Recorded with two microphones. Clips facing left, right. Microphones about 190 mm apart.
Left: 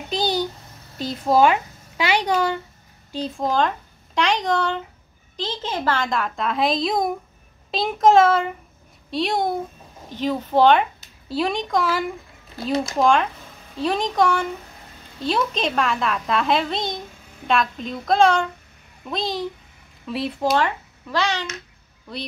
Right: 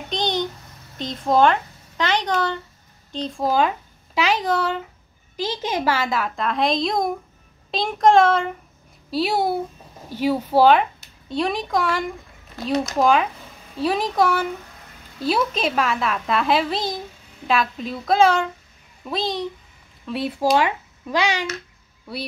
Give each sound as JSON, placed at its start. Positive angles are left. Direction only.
{"t": 0.1, "sound": "a sound", "side_deg": 5}
{"t": 0.9, "sound": "speech", "side_deg": 5}
{"t": 3.4, "sound": "a woman's voice", "side_deg": -5}
{"t": 20.4, "sound": "a child's voice", "side_deg": -15}